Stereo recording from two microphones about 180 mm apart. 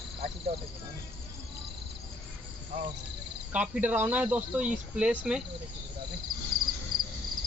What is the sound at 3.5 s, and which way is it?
Speech, 10° right (ahead or behind).